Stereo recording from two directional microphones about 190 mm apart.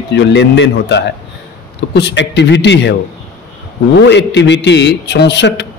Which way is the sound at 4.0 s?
65° left (ahead or behind).